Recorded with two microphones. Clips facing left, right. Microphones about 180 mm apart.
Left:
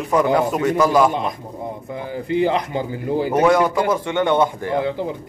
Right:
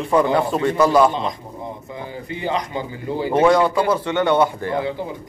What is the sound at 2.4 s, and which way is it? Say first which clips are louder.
Speech: left 2 dB; 55° left (ahead or behind).